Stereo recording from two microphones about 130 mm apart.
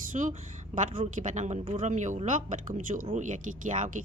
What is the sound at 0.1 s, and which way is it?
Speech, 75° right (ahead or behind).